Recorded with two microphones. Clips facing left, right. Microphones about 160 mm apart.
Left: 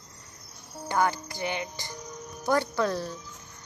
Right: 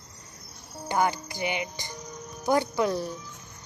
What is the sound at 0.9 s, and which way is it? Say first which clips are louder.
A woman's voice: right 1 dB; 15° right (ahead or behind).